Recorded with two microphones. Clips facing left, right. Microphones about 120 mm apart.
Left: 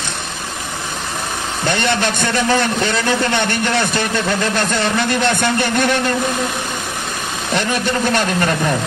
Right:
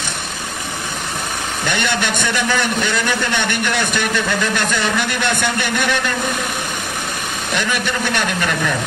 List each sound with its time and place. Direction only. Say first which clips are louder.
1.7 s a man's voice: left 3 dB; 30° left (ahead or behind)
7.5 s a man's voice: left 3 dB; 35° left (ahead or behind)